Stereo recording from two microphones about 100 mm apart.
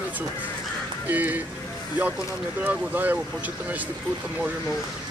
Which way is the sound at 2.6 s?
15° right (ahead or behind).